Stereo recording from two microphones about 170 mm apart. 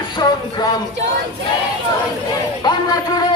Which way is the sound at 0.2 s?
25° left (ahead or behind).